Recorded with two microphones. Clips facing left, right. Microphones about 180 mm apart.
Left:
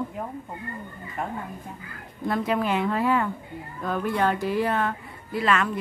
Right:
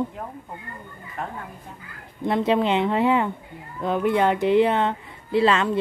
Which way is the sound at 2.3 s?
25° right (ahead or behind).